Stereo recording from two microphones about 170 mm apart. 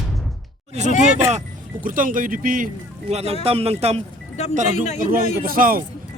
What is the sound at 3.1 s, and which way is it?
Speech, 40° right (ahead or behind).